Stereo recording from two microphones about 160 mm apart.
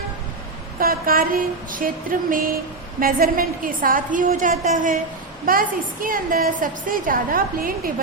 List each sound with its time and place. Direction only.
0.8 s a woman's voice: 65° right (ahead or behind)
6.0 s a woman's voice: 60° right (ahead or behind)